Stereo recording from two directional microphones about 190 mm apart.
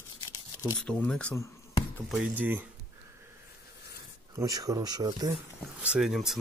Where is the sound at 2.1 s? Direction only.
10° right (ahead or behind).